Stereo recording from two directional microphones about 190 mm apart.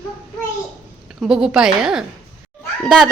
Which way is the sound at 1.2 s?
5° right (ahead or behind).